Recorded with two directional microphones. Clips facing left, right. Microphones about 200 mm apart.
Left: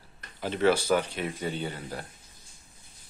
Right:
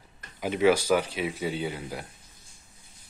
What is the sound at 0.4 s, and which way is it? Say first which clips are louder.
Speech: right 2 dB; 10° right (ahead or behind).